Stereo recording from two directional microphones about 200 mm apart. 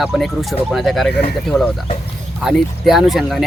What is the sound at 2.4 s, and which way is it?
Speech, centre (ahead or behind).